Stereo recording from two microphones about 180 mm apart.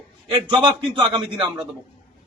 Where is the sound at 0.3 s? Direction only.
25° right (ahead or behind).